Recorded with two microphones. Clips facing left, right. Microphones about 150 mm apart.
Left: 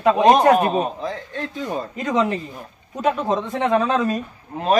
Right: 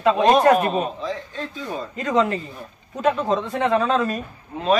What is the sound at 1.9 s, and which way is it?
A man's voice, 15° left (ahead or behind).